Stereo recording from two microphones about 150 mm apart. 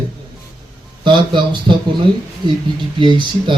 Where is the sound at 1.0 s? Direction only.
30° right (ahead or behind).